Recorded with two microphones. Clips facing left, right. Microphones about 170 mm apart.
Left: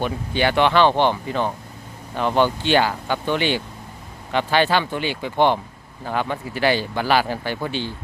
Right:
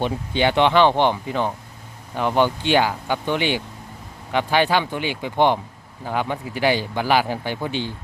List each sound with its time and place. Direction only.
0.0 s speech: 20° right (ahead or behind)